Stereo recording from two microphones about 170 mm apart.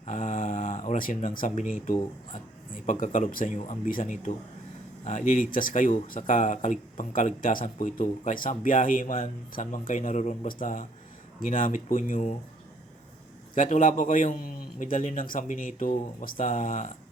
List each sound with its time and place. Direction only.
0.0 s speech: 45° left (ahead or behind)
13.6 s speech: 50° left (ahead or behind)